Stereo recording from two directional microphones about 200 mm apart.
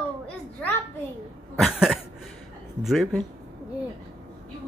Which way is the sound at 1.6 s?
Centre (ahead or behind).